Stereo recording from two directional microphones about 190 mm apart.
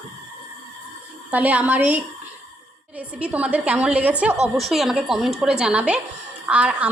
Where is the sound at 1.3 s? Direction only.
10° right (ahead or behind).